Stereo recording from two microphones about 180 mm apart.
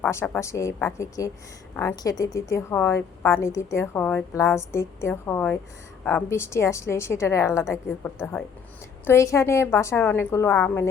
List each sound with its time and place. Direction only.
0.0 s a woman's voice: 15° left (ahead or behind)